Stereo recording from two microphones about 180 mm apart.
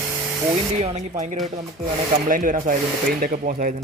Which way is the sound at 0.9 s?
40° right (ahead or behind).